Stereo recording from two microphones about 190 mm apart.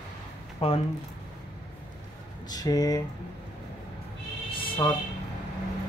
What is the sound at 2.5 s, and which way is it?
Speech, 20° left (ahead or behind).